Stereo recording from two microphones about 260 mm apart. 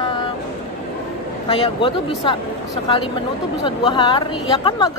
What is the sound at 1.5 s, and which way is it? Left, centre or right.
Speech, centre.